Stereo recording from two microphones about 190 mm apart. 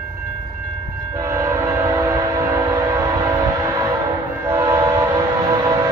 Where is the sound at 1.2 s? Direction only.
15° right (ahead or behind).